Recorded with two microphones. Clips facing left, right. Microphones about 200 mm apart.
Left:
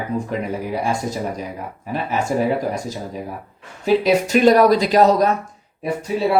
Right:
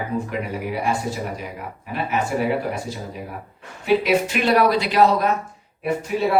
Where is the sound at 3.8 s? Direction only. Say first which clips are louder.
Left 2 dB; 40° left (ahead or behind).